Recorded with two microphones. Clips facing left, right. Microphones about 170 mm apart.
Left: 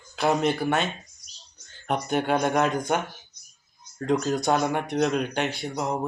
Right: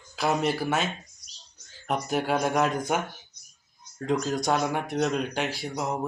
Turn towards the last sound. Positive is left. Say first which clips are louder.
# left 2 dB
turn(degrees=0)  # may be behind; listen again after turning